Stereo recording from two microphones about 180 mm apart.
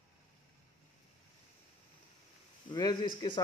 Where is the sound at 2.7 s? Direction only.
25° left (ahead or behind).